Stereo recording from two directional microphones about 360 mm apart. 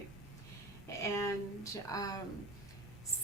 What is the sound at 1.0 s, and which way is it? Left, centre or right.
A woman's voice, centre.